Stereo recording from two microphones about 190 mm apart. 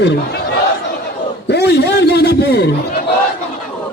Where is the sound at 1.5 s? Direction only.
60° left (ahead or behind).